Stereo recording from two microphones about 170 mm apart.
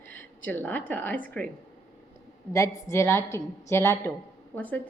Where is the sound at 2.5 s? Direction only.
20° left (ahead or behind).